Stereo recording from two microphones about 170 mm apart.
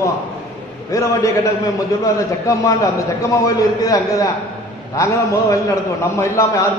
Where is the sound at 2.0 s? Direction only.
20° left (ahead or behind).